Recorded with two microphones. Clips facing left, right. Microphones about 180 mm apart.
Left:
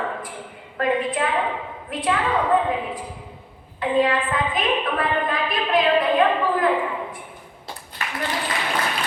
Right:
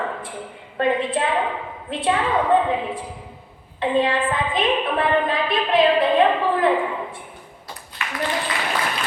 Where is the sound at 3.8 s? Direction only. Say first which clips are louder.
Even; 25° right (ahead or behind).